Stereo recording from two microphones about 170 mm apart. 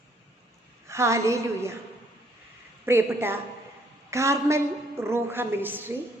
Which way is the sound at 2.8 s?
15° right (ahead or behind).